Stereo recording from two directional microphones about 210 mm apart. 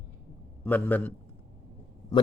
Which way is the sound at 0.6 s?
10° left (ahead or behind).